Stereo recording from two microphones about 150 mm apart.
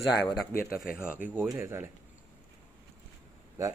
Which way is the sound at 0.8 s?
5° right (ahead or behind).